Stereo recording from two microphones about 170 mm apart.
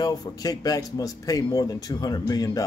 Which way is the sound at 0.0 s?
20° left (ahead or behind).